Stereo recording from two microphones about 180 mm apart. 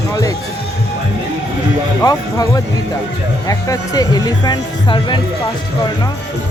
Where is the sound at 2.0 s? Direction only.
20° left (ahead or behind).